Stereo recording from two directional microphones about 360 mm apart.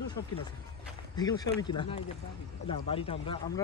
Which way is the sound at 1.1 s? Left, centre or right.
Centre.